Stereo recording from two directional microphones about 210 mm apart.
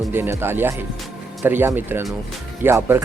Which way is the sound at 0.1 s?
10° right (ahead or behind).